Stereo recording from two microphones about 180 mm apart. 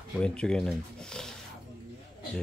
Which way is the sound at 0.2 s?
5° left (ahead or behind).